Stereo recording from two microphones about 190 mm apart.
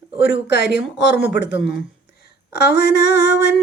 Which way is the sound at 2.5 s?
60° left (ahead or behind).